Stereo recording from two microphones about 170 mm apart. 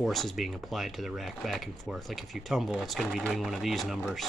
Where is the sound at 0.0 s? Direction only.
Centre (ahead or behind).